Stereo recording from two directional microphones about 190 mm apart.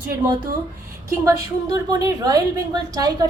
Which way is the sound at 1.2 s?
20° right (ahead or behind).